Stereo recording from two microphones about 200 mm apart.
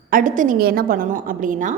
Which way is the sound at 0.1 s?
40° right (ahead or behind).